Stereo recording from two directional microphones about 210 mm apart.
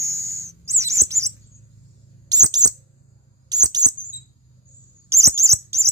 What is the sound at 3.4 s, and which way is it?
Chirp, 20° right (ahead or behind).